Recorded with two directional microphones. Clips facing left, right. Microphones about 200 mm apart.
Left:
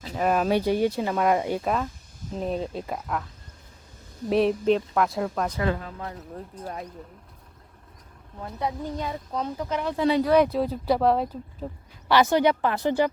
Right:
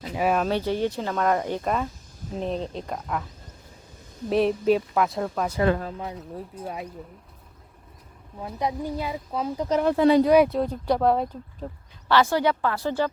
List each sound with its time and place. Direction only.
0.1 s speech: 5° right (ahead or behind)
0.4 s speech: 10° left (ahead or behind)
4.3 s speech: centre (ahead or behind)
8.4 s speech: 10° right (ahead or behind)
9.6 s speech: 40° right (ahead or behind)
9.9 s speech: 55° right (ahead or behind)
10.2 s speech: 10° right (ahead or behind)
10.5 s speech: 5° left (ahead or behind)
12.0 s speech: 15° left (ahead or behind)